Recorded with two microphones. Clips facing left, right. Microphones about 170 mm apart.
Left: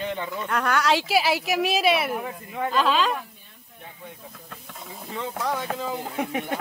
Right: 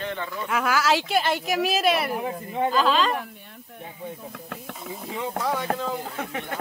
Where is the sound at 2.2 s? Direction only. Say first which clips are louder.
Right 4 dB; 25° right (ahead or behind).